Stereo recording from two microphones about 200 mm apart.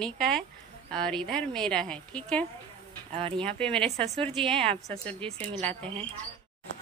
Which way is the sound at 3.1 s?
30° right (ahead or behind).